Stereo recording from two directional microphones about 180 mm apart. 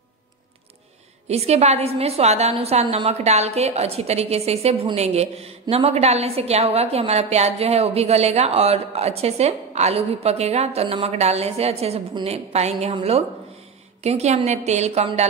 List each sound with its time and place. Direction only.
1.2 s a woman's voice: 35° right (ahead or behind)